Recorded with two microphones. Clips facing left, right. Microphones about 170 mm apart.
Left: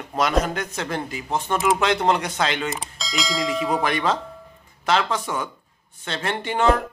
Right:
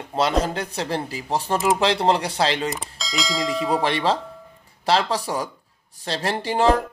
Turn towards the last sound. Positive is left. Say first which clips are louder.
# right 1 dB
turn(degrees=-35)  # may be behind; listen again after turning